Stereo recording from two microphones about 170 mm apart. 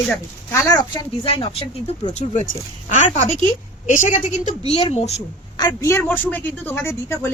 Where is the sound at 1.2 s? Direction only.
35° left (ahead or behind).